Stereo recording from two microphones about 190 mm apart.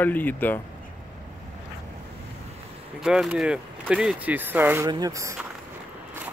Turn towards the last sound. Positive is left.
turn(degrees=-15)  # may be behind; listen again after turning